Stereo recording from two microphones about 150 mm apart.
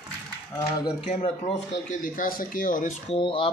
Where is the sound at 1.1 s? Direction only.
45° left (ahead or behind).